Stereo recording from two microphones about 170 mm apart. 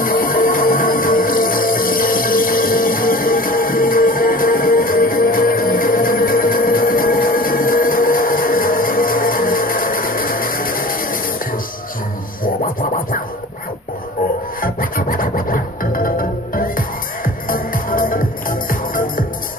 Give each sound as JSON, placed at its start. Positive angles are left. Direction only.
{"t": 0.0, "sound": "music", "side_deg": 55}
{"t": 14.6, "sound": "music", "side_deg": 55}